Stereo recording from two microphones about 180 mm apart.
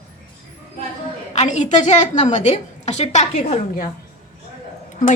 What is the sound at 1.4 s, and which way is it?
A woman's voice, 40° left (ahead or behind).